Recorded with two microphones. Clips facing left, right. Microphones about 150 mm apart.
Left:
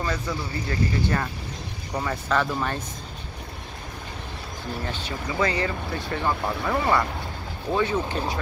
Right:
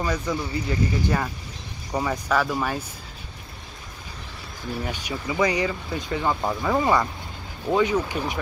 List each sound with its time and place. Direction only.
0.0 s speech: 15° right (ahead or behind)
4.8 s speech: 15° right (ahead or behind)